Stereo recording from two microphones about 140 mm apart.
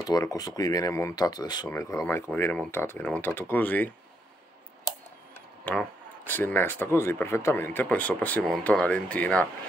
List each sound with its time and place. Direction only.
0.0 s speech: 25° left (ahead or behind)
5.7 s speech: 15° left (ahead or behind)